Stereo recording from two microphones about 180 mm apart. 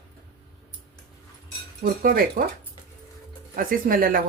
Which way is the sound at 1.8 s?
55° right (ahead or behind).